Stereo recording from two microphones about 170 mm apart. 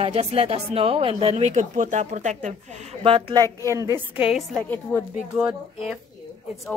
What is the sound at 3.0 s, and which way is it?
Speech, 30° right (ahead or behind).